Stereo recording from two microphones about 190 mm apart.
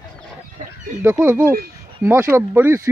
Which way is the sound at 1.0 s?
10° right (ahead or behind).